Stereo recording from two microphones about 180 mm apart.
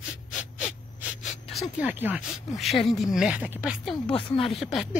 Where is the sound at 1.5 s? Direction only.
5° right (ahead or behind).